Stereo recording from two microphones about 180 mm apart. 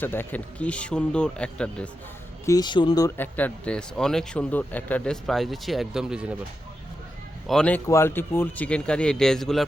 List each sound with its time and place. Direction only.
0.0 s speech: 10° left (ahead or behind)
2.5 s speech: 25° left (ahead or behind)
3.2 s speech: 10° left (ahead or behind)
7.4 s a man's voice: 5° left (ahead or behind)